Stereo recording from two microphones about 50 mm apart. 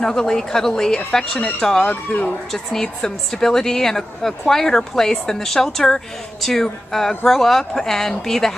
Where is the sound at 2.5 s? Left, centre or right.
Centre.